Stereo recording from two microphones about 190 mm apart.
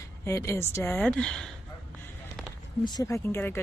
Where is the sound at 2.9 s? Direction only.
15° left (ahead or behind).